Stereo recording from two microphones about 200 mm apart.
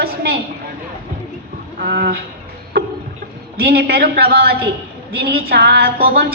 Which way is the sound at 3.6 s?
50° right (ahead or behind).